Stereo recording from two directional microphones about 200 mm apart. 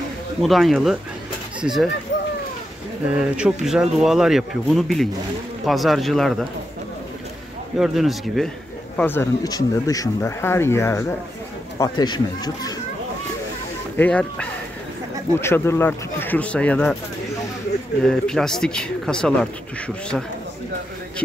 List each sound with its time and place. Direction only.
0.4 s speech: centre (ahead or behind)
3.1 s speech: 5° right (ahead or behind)
7.7 s speech: centre (ahead or behind)
8.9 s speech: 10° left (ahead or behind)
13.9 s speech: 5° left (ahead or behind)
18.0 s speech: 5° left (ahead or behind)